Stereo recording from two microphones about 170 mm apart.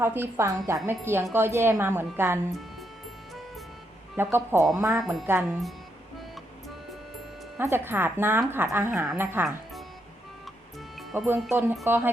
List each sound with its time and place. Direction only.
0.0 s speech: 15° right (ahead or behind)
4.2 s speech: 15° right (ahead or behind)
7.6 s speech: 15° right (ahead or behind)
11.4 s speech: 15° right (ahead or behind)